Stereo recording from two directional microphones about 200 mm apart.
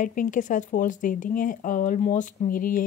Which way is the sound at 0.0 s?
40° left (ahead or behind).